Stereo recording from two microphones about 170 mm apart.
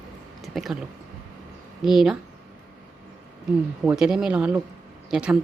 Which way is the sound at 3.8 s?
5° right (ahead or behind).